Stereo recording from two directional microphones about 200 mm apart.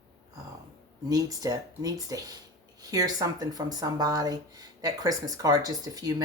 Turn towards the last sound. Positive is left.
turn(degrees=-20)  # may be behind; listen again after turning